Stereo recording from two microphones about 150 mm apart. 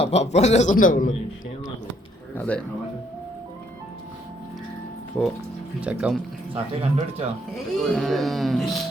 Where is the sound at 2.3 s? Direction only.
10° left (ahead or behind).